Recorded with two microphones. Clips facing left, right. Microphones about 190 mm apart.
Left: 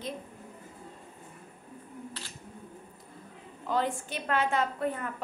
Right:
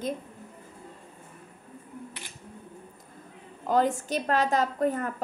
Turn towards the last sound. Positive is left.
turn(degrees=-40)  # may be behind; listen again after turning